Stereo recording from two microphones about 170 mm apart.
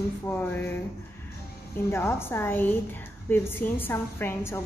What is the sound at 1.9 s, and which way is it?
A woman's voice, 15° left (ahead or behind).